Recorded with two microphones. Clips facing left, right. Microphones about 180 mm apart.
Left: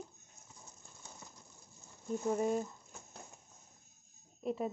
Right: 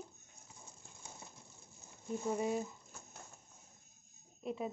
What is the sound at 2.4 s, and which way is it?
Speech, 5° right (ahead or behind).